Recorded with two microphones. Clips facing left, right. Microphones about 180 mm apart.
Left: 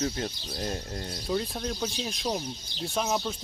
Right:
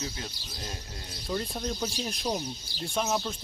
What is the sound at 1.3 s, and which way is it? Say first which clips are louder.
Speech: left 1 dB; centre (ahead or behind).